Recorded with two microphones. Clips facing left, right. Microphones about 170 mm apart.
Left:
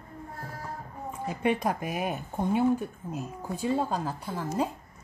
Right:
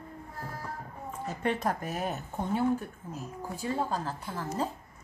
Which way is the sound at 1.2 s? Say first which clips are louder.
Left 3 dB; 10° left (ahead or behind).